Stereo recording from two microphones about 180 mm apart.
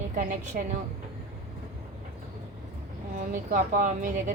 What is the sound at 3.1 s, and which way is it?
A woman's voice, 50° right (ahead or behind).